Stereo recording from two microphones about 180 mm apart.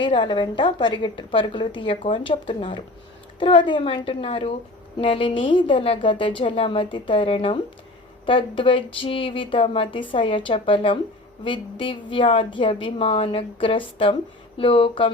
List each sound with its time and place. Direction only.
0.0 s a woman's voice: 25° left (ahead or behind)